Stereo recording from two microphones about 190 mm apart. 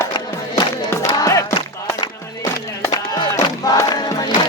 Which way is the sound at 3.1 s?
20° left (ahead or behind).